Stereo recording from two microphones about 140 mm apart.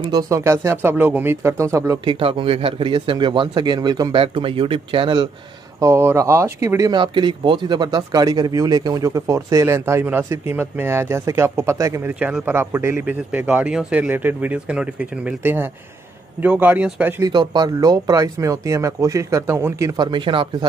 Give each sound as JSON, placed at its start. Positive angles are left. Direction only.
{"t": 0.1, "sound": "speech", "side_deg": -25}
{"t": 2.0, "sound": "speech", "side_deg": -40}
{"t": 5.8, "sound": "speech", "side_deg": -20}
{"t": 6.9, "sound": "speech", "side_deg": -35}
{"t": 17.2, "sound": "speech", "side_deg": -30}
{"t": 20.0, "sound": "speech", "side_deg": -35}